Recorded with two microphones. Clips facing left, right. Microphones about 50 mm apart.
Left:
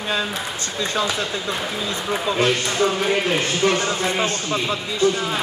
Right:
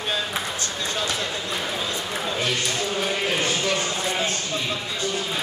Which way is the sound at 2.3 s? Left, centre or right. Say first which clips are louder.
Left 5 dB; left.